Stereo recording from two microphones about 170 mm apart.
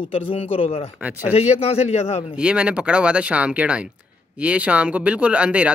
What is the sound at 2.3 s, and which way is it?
Speech, 5° right (ahead or behind).